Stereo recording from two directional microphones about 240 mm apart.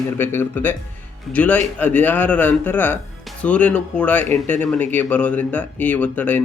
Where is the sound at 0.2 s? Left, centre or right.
Centre.